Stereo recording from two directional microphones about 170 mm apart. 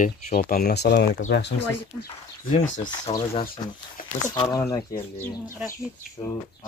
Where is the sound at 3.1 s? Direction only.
35° left (ahead or behind).